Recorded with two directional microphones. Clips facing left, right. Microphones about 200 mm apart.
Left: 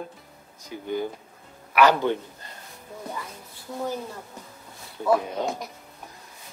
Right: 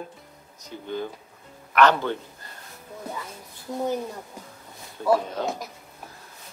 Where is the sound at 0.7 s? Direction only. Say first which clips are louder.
Left 2 dB; 10° left (ahead or behind).